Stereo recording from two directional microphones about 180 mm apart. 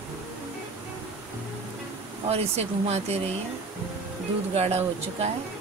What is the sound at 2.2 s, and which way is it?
Speech, 35° right (ahead or behind).